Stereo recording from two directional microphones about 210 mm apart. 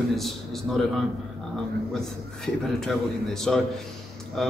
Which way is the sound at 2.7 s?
Centre (ahead or behind).